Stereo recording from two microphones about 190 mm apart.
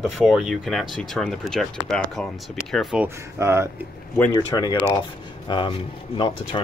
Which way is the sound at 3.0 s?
15° right (ahead or behind).